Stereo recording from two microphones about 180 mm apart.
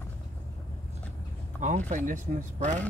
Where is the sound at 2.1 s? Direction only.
45° right (ahead or behind).